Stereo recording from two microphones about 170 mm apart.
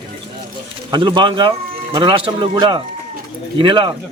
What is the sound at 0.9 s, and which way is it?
Speech, 25° right (ahead or behind).